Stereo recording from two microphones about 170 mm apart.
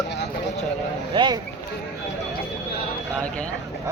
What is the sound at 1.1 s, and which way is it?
Speech, 25° right (ahead or behind).